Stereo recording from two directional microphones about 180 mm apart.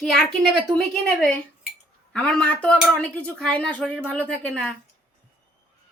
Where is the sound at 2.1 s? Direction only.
5° left (ahead or behind).